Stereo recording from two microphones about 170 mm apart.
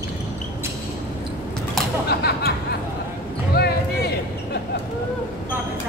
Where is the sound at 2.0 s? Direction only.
70° left (ahead or behind).